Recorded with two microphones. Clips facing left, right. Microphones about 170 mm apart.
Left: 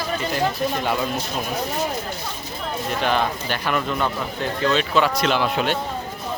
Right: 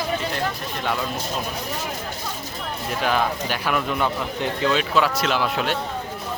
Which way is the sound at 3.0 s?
5° right (ahead or behind).